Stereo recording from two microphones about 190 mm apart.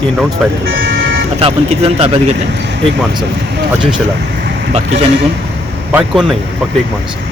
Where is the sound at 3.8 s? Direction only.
25° right (ahead or behind).